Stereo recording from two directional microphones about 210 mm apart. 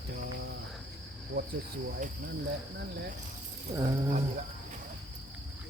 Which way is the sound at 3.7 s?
30° right (ahead or behind).